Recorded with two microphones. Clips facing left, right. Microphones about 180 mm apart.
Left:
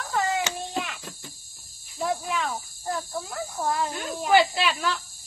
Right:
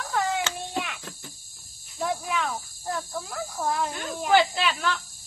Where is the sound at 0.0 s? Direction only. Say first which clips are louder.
Left 1 dB; centre (ahead or behind).